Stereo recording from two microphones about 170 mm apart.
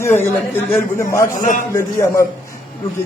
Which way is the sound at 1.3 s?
50° left (ahead or behind).